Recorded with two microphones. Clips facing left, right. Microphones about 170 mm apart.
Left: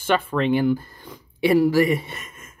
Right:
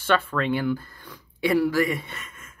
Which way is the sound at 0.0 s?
15° left (ahead or behind).